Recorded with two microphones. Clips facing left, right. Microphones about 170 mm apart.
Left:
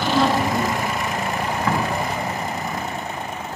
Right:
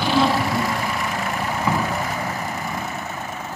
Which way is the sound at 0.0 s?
5° right (ahead or behind).